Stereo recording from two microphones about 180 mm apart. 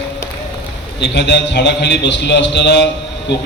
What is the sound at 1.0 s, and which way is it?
A man's voice, 70° left (ahead or behind).